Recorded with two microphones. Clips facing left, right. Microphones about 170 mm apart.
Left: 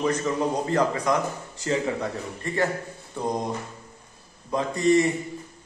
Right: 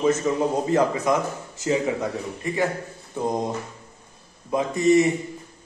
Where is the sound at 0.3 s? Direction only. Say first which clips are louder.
Right 3 dB; 15° right (ahead or behind).